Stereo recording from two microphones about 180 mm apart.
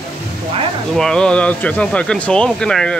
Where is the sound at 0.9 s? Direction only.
5° left (ahead or behind).